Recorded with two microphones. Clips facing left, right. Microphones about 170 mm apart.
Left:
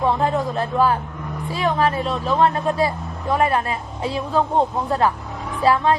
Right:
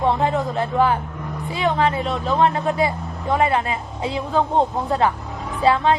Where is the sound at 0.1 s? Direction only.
20° right (ahead or behind).